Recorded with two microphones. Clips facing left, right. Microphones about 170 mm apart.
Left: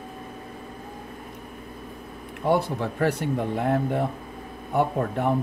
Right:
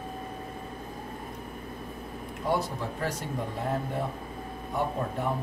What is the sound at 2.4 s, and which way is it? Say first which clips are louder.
Speech: left 6 dB; 60° left (ahead or behind).